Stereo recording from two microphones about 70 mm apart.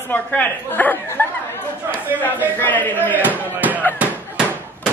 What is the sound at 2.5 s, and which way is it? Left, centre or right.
Speech, left.